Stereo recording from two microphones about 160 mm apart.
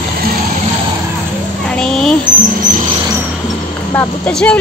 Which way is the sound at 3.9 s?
10° left (ahead or behind).